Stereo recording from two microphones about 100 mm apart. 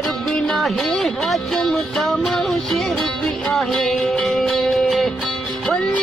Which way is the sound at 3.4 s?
Centre (ahead or behind).